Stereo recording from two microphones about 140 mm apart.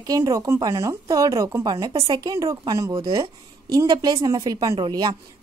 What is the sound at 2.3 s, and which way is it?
A woman's voice, 25° right (ahead or behind).